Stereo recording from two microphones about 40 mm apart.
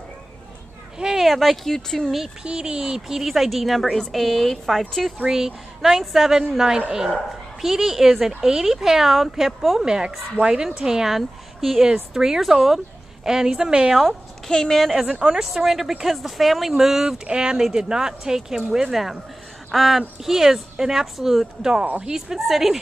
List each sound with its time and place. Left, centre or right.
0.9 s a sound: centre
1.2 s speech: centre
2.4 s a woman's voice: right; by 5.1 s centre
5.2 s a woman's voice: centre
9.8 s a woman's voice: right
14.5 s a woman's voice: centre
15.0 s speech: centre
15.4 s speech: centre
17.3 s a woman's voice: centre